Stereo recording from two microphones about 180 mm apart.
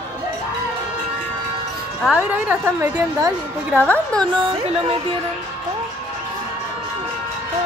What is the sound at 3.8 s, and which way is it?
Speech, 5° left (ahead or behind).